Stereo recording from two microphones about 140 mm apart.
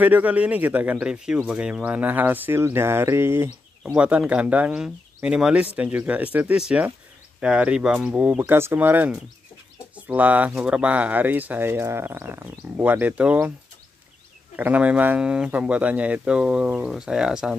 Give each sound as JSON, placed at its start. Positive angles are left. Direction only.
{"t": 0.0, "sound": "speech", "side_deg": -10}
{"t": 3.8, "sound": "speech", "side_deg": -5}
{"t": 14.6, "sound": "speech", "side_deg": -10}